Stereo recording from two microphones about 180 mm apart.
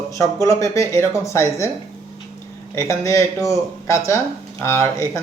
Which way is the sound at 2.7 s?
15° left (ahead or behind).